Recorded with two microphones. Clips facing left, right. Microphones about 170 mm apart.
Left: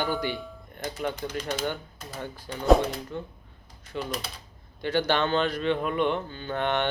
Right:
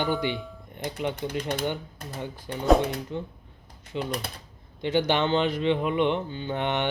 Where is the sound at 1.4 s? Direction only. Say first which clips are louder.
Right 1 dB; 60° right (ahead or behind).